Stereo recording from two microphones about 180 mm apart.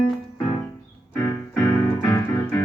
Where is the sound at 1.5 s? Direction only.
10° left (ahead or behind).